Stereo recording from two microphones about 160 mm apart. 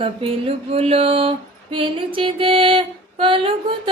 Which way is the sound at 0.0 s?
35° right (ahead or behind).